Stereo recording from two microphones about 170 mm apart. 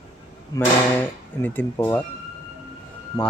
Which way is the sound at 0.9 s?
10° left (ahead or behind).